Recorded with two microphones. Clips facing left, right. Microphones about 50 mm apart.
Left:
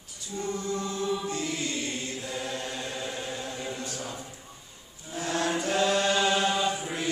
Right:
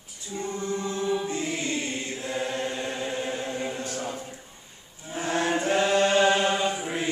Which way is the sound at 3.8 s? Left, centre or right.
Right.